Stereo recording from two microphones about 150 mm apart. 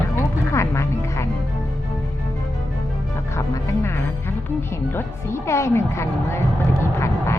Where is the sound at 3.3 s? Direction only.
20° left (ahead or behind).